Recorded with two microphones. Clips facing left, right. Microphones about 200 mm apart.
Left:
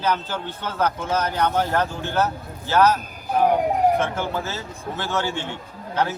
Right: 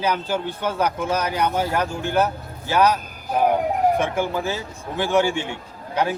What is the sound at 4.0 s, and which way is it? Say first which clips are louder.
A man's voice: right 2 dB; 15° right (ahead or behind).